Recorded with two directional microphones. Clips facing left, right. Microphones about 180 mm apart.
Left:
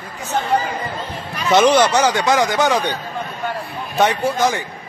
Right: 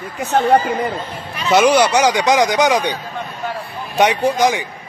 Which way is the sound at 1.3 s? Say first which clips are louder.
Right 1 dB; centre (ahead or behind).